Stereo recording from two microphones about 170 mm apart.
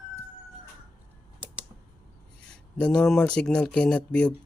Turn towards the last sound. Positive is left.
turn(degrees=5)  # may be behind; listen again after turning